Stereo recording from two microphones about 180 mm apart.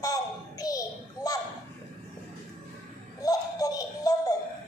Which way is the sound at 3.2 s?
20° left (ahead or behind).